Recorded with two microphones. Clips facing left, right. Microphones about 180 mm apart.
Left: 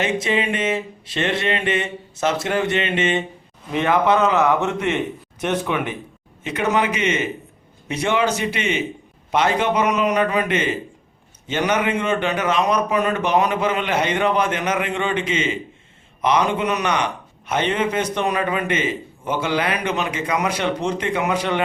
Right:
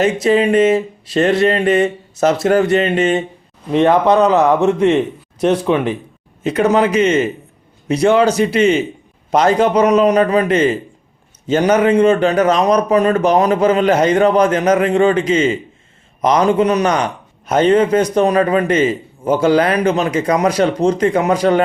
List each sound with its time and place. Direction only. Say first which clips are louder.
0.0 s a man's voice: right 8 dB; 40° right (ahead or behind)